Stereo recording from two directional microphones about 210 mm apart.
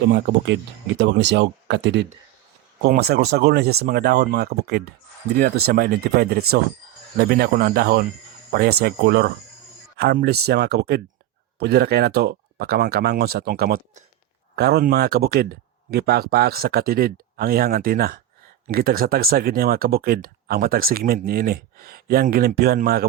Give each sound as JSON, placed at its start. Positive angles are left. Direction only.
{"t": 0.1, "sound": "speech", "side_deg": -50}